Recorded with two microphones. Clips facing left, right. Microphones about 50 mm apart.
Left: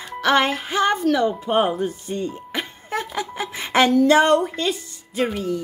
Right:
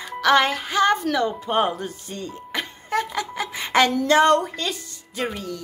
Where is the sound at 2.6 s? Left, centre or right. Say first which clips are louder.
Right 3 dB; centre.